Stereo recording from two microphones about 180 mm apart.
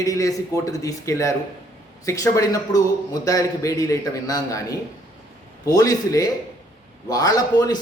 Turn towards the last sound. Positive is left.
turn(degrees=20)  # may be behind; listen again after turning